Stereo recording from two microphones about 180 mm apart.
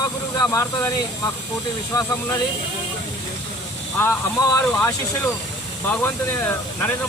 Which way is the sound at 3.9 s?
15° left (ahead or behind).